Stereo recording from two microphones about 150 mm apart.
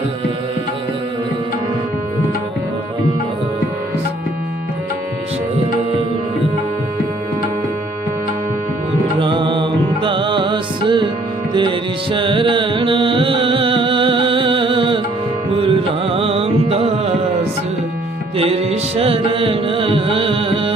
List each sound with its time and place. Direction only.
9.1 s music: 35° right (ahead or behind)
18.3 s music: 40° right (ahead or behind)